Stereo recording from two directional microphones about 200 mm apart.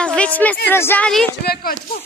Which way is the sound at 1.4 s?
50° left (ahead or behind).